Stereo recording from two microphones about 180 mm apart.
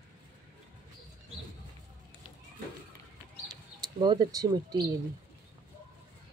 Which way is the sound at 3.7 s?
25° right (ahead or behind).